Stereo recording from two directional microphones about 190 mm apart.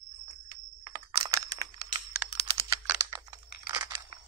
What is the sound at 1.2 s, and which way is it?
Computer keyboard, 15° right (ahead or behind).